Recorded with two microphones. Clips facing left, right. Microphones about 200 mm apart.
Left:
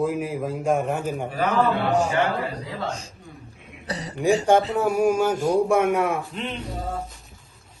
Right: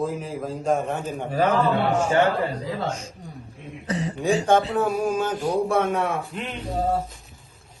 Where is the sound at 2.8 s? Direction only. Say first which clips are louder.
Right 1 dB; 35° left (ahead or behind).